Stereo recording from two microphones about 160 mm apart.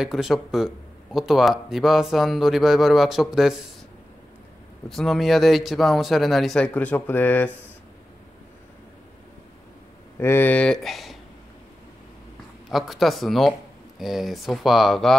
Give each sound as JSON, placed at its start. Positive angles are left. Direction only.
{"t": 0.0, "sound": "speech", "side_deg": 0}
{"t": 4.8, "sound": "speech", "side_deg": 0}
{"t": 10.1, "sound": "speech", "side_deg": 15}
{"t": 12.7, "sound": "speech", "side_deg": 0}